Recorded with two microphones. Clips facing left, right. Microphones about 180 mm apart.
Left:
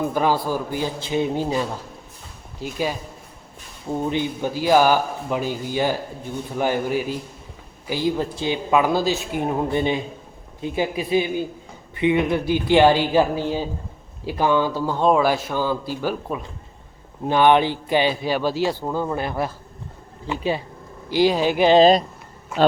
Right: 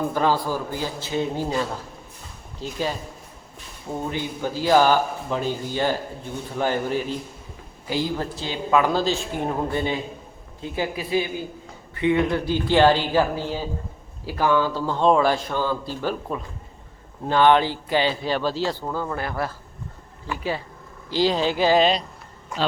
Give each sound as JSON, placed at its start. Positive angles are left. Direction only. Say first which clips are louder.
{"t": 0.1, "sound": "speech", "louder": "left 1 dB", "side_deg": 15}
{"t": 4.1, "sound": "speech", "louder": "left 4 dB", "side_deg": 20}
{"t": 8.4, "sound": "speech", "louder": "right 1 dB", "side_deg": 15}
{"t": 21.8, "sound": "speech", "louder": "left 6 dB", "side_deg": 40}
{"t": 22.5, "sound": "speech", "louder": "left 8 dB", "side_deg": 5}